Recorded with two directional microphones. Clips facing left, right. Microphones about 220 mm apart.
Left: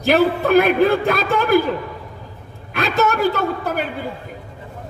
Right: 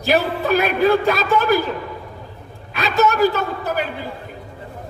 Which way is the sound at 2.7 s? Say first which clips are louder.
Right 1 dB; 50° left (ahead or behind).